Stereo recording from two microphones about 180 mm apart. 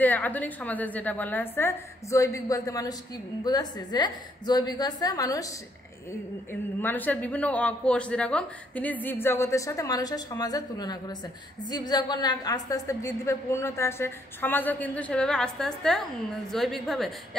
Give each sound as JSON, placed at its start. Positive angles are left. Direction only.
{"t": 0.0, "sound": "a woman's voice", "side_deg": 10}
{"t": 6.8, "sound": "a woman's voice", "side_deg": 10}